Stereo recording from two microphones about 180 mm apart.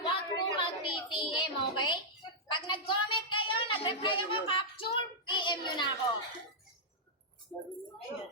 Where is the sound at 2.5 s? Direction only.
25° left (ahead or behind).